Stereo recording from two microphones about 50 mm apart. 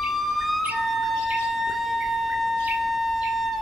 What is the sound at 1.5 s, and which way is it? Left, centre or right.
Wind instrument, centre.